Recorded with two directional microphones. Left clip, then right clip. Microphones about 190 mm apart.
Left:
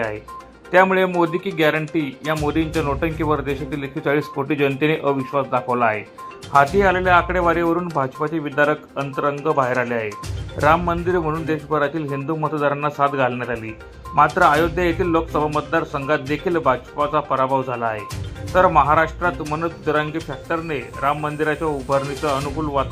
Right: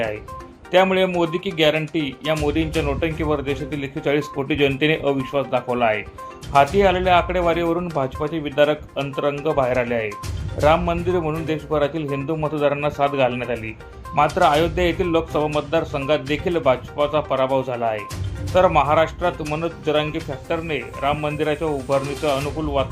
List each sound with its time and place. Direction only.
0.7 s speech: centre (ahead or behind)